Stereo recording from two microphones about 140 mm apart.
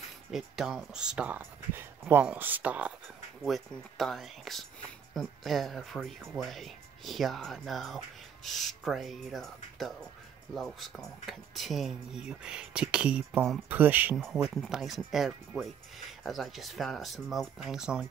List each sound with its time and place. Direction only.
0.3 s speech: centre (ahead or behind)
3.4 s speech: centre (ahead or behind)
14.1 s speech: centre (ahead or behind)